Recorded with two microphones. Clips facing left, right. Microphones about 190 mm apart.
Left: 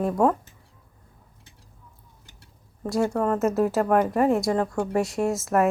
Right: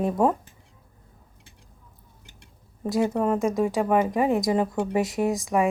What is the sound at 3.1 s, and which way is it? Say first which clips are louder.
Speech: even; 10° right (ahead or behind).